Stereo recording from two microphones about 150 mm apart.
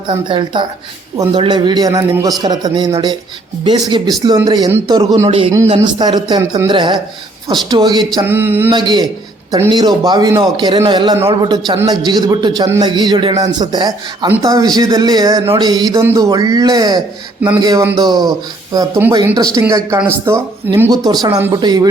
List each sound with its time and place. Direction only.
0.3 s speech: 35° right (ahead or behind)
1.1 s a man's voice: 20° right (ahead or behind)
8.2 s a sound: 15° right (ahead or behind)
8.7 s a man's voice: 30° right (ahead or behind)